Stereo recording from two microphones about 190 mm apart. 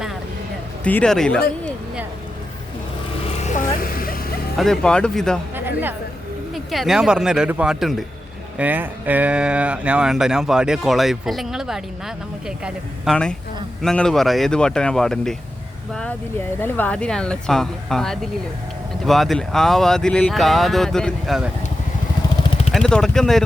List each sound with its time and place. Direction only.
0.9 s speech: 5° left (ahead or behind)
3.3 s vehicle: 40° left (ahead or behind)
4.5 s speech: centre (ahead or behind)
5.5 s a sound: 10° right (ahead or behind)
6.5 s speech: centre (ahead or behind)
16.6 s speech: 10° left (ahead or behind)
22.4 s vehicle: 35° left (ahead or behind)
22.7 s speech: 5° left (ahead or behind)